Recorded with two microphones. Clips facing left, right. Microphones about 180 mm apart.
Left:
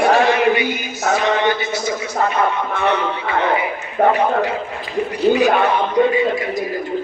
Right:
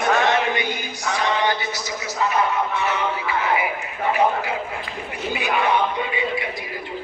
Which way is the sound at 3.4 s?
30° left (ahead or behind).